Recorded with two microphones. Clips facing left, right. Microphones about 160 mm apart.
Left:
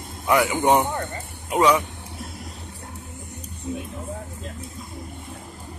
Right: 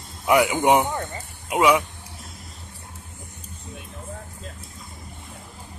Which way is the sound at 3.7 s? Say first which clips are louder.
Left 11 dB; 5° left (ahead or behind).